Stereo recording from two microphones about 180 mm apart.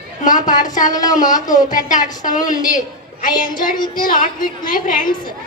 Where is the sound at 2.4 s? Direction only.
20° left (ahead or behind).